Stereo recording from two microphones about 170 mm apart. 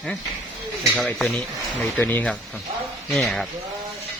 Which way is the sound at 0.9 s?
5° left (ahead or behind).